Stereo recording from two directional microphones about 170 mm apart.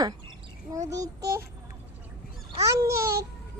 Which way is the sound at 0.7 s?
20° right (ahead or behind).